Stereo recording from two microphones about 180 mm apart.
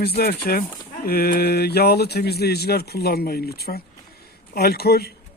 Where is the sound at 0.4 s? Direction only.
55° left (ahead or behind).